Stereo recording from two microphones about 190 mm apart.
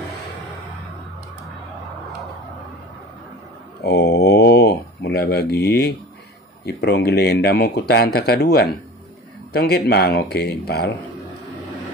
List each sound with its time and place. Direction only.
3.8 s mantra: 60° left (ahead or behind)
6.6 s speech: 60° left (ahead or behind)